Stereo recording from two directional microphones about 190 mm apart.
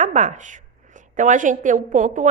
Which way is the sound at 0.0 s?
40° right (ahead or behind).